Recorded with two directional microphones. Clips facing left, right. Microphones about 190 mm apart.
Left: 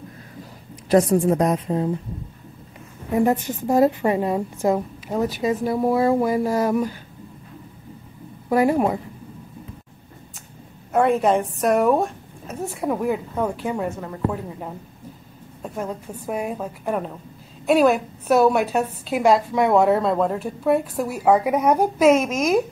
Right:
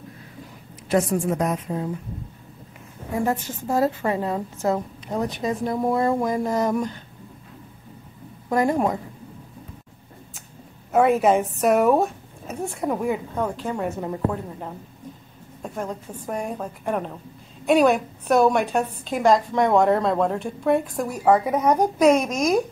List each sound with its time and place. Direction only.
0.8 s a woman's voice: 35° left (ahead or behind)
3.1 s a woman's voice: 20° left (ahead or behind)
8.5 s a woman's voice: 10° left (ahead or behind)
10.9 s a woman's voice: centre (ahead or behind)
15.6 s a woman's voice: 5° left (ahead or behind)